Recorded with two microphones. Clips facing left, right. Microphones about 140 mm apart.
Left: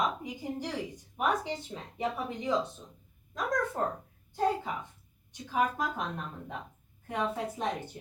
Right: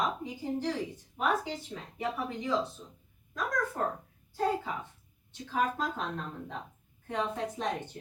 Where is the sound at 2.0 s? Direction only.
20° left (ahead or behind).